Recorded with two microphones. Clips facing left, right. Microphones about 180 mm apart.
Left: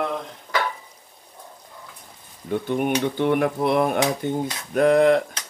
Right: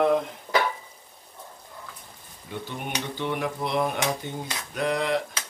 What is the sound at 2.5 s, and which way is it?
Cutlery, 55° left (ahead or behind).